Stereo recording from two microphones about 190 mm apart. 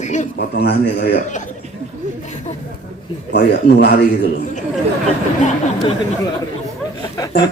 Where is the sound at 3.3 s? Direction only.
60° left (ahead or behind).